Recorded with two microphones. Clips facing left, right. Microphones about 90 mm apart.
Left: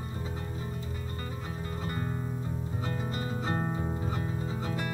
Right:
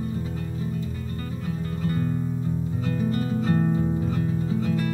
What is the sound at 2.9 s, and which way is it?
Music, 25° left (ahead or behind).